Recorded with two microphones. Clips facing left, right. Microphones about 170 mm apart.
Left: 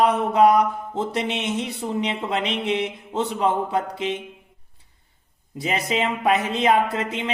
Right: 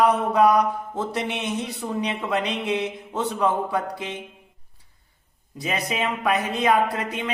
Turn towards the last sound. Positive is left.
turn(degrees=25)  # may be behind; listen again after turning